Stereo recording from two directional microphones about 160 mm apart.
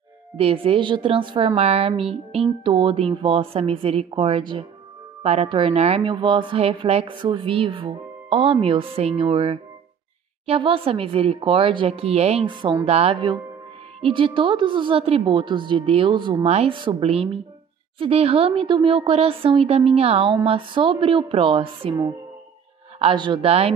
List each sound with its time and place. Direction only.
0.4 s a woman's voice: 35° right (ahead or behind)
16.4 s a woman's voice: 40° right (ahead or behind)